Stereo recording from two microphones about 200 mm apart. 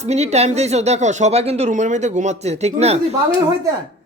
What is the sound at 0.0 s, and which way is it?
Speech, 35° right (ahead or behind).